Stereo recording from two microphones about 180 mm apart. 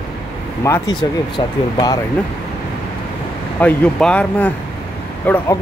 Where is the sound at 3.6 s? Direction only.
5° left (ahead or behind).